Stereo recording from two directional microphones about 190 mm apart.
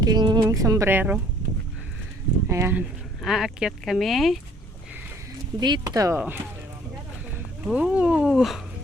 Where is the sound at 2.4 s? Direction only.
15° right (ahead or behind).